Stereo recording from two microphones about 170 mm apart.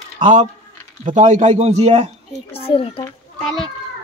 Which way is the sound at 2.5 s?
35° left (ahead or behind).